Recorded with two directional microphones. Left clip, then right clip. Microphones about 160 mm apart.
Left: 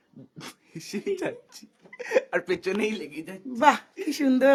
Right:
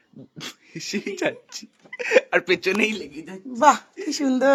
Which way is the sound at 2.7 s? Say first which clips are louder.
Right 5 dB; 40° right (ahead or behind).